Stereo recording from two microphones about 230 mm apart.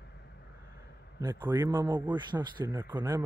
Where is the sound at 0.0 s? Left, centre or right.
Left.